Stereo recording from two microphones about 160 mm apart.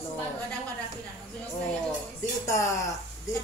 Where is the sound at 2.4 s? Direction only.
20° left (ahead or behind).